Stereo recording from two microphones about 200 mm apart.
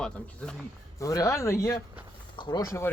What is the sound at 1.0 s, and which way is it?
Speech, 15° left (ahead or behind).